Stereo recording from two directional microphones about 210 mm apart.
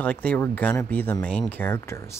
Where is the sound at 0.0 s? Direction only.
5° left (ahead or behind).